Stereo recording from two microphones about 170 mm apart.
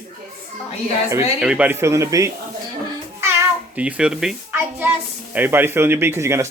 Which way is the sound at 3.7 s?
5° right (ahead or behind).